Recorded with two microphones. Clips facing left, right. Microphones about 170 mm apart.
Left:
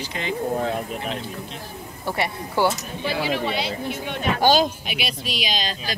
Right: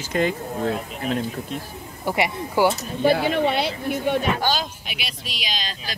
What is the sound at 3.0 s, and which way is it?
Speech, 50° right (ahead or behind).